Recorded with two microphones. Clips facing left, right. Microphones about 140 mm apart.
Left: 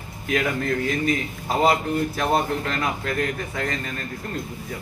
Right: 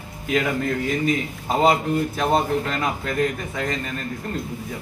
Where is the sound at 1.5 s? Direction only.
20° right (ahead or behind).